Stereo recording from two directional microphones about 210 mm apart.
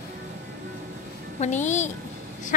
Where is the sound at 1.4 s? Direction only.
35° left (ahead or behind).